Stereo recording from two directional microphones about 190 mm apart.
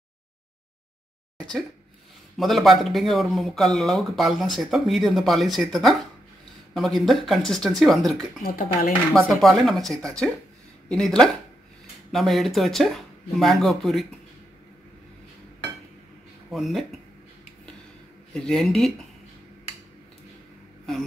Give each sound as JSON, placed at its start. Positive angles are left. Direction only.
{"t": 2.3, "sound": "speech", "side_deg": 0}
{"t": 8.4, "sound": "speech", "side_deg": 50}
{"t": 9.1, "sound": "speech", "side_deg": 0}
{"t": 16.4, "sound": "speech", "side_deg": 0}
{"t": 18.3, "sound": "speech", "side_deg": 0}